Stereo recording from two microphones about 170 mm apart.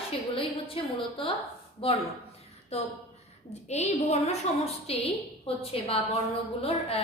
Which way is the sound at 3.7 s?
40° left (ahead or behind).